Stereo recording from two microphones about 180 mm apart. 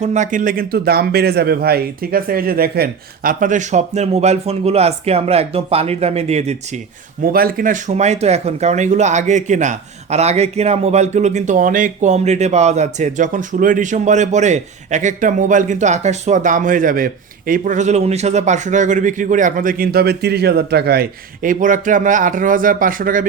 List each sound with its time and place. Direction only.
0.0 s a man's voice: 40° right (ahead or behind)
7.2 s speech: 55° right (ahead or behind)